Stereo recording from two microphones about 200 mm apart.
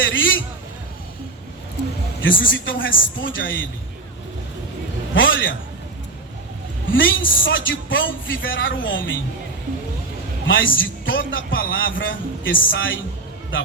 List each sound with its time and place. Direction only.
0.0 s a sound: 70° left (ahead or behind)
2.4 s a man's voice: 70° left (ahead or behind)
5.1 s a man's voice: 70° left (ahead or behind)
6.9 s a man's voice: 70° left (ahead or behind)
10.4 s a man's voice: 70° left (ahead or behind)